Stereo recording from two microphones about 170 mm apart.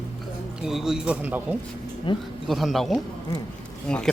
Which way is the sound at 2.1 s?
30° left (ahead or behind).